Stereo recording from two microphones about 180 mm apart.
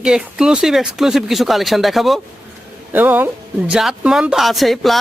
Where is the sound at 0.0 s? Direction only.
5° right (ahead or behind).